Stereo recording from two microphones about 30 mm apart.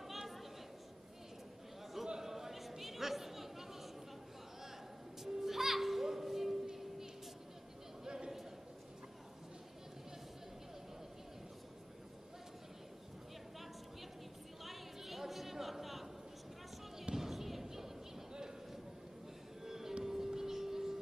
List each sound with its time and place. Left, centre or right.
0.1 s a sound: centre
2.2 s chatter: centre
5.2 s music: centre
8.0 s a sound: right
14.6 s chatter: centre
17.1 s music: centre
19.6 s music: centre